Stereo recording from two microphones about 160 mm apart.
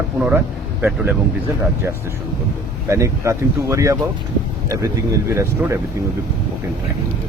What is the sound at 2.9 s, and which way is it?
Speech, 20° right (ahead or behind).